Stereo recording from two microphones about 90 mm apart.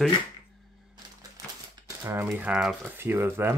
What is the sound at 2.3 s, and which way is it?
Speech, 10° right (ahead or behind).